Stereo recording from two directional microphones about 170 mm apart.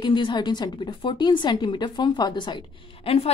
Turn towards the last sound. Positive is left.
turn(degrees=35)  # may be behind; listen again after turning